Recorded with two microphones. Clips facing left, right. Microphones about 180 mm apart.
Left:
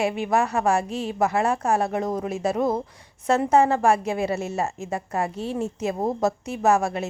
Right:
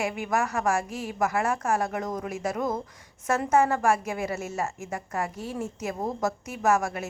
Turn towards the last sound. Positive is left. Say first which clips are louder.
# left 4 dB
turn(degrees=30)  # may be behind; listen again after turning